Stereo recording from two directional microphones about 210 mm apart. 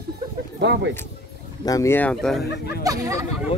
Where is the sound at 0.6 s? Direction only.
55° right (ahead or behind).